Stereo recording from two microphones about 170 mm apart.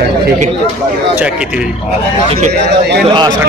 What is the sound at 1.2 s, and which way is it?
Speech, 5° right (ahead or behind).